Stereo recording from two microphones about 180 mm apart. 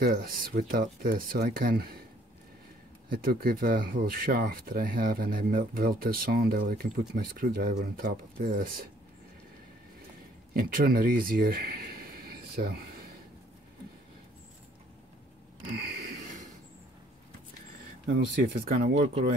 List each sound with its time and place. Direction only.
0.0 s speech: 55° right (ahead or behind)
3.1 s speech: 55° right (ahead or behind)
10.5 s speech: 55° right (ahead or behind)
18.0 s speech: 55° right (ahead or behind)